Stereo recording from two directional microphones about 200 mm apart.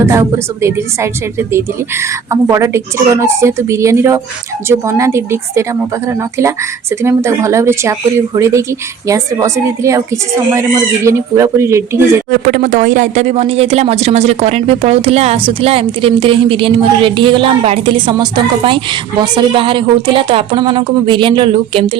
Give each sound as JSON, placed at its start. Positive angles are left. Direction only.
{"t": 0.0, "sound": "speech", "side_deg": -15}
{"t": 7.0, "sound": "speech", "side_deg": -15}
{"t": 9.0, "sound": "speech", "side_deg": -15}
{"t": 12.3, "sound": "a woman's voice", "side_deg": -45}